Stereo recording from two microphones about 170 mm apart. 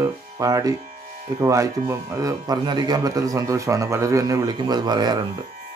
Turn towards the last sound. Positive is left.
turn(degrees=-25)  # may be behind; listen again after turning